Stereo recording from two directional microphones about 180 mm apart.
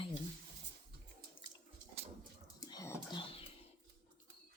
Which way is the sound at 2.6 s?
20° left (ahead or behind).